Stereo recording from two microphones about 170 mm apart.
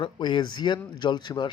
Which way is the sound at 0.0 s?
25° left (ahead or behind).